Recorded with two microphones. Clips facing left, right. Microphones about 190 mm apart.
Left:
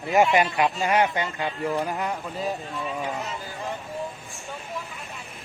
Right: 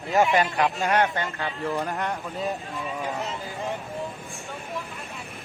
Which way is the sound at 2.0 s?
Centre (ahead or behind).